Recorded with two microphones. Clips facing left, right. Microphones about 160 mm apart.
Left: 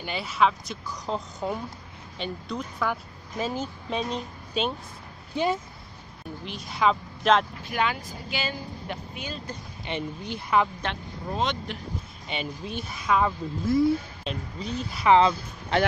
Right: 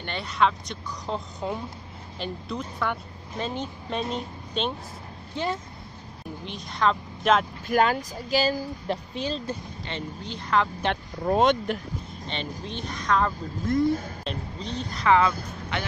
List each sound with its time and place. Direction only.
0.0 s speech: 5° left (ahead or behind)
5.3 s speech: 15° left (ahead or behind)
6.4 s speech: centre (ahead or behind)
7.6 s speech: 45° right (ahead or behind)
9.8 s speech: 15° left (ahead or behind)
10.9 s speech: 55° right (ahead or behind)
12.3 s speech: 10° left (ahead or behind)
15.0 s speech: 25° left (ahead or behind)